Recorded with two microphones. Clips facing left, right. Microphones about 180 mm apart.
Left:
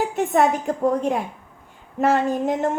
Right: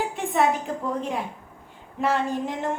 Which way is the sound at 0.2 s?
45° left (ahead or behind).